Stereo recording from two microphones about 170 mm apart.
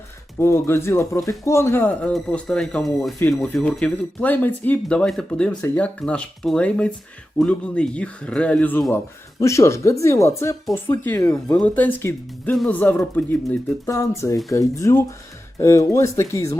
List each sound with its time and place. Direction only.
0.3 s speech: 15° left (ahead or behind)